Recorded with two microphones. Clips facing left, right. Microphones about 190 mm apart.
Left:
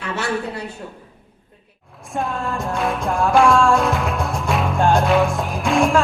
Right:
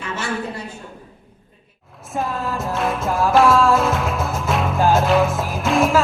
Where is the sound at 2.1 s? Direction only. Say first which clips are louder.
Even; centre (ahead or behind).